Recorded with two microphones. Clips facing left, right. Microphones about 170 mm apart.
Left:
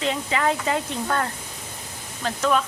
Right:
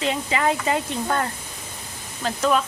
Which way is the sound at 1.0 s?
20° right (ahead or behind).